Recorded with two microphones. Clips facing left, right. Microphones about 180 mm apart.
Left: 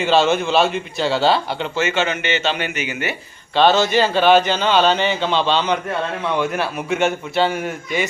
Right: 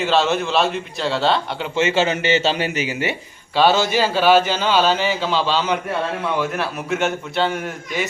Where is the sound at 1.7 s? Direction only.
30° right (ahead or behind).